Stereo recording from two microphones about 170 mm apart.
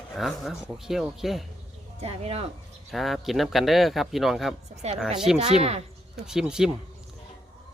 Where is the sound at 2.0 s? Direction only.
35° right (ahead or behind).